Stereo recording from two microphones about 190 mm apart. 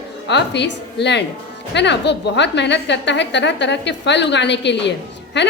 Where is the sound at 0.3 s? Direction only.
65° left (ahead or behind).